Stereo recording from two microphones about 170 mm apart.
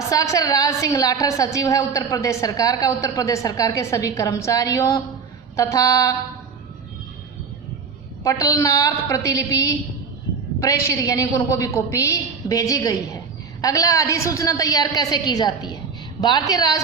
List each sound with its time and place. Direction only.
0.1 s a woman's voice: 20° left (ahead or behind)
8.2 s a woman's voice: 20° left (ahead or behind)